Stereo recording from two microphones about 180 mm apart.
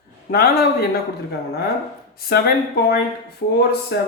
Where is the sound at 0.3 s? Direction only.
60° left (ahead or behind).